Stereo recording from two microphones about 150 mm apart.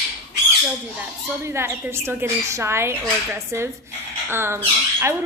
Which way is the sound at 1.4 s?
15° right (ahead or behind).